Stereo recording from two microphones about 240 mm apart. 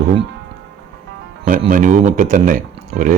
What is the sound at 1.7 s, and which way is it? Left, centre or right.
Speech, right.